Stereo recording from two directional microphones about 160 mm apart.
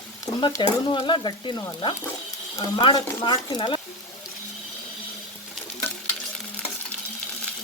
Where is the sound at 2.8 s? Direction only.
35° left (ahead or behind).